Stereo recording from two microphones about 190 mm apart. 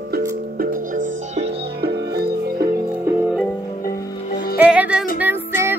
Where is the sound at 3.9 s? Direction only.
55° left (ahead or behind).